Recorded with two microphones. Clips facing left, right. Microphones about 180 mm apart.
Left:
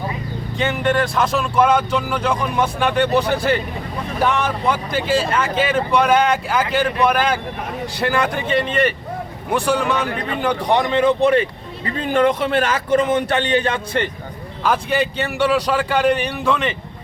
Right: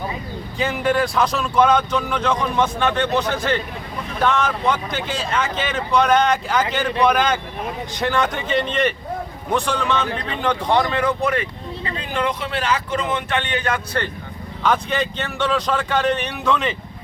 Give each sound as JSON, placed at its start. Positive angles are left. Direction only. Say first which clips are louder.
{"t": 0.6, "sound": "speech", "louder": "left 1 dB", "side_deg": 0}
{"t": 11.9, "sound": "speech", "louder": "left 8 dB", "side_deg": 50}
{"t": 14.6, "sound": "speech", "louder": "left 2 dB", "side_deg": 5}